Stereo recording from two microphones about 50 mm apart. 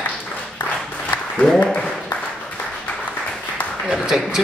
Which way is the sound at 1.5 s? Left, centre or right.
Left.